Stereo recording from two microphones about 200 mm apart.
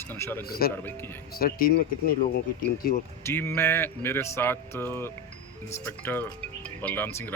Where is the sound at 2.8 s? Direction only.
50° left (ahead or behind).